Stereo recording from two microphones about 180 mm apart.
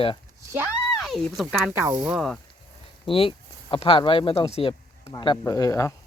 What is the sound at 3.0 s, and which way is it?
Speech, 30° left (ahead or behind).